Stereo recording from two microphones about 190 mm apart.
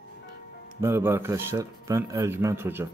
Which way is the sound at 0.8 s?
15° right (ahead or behind).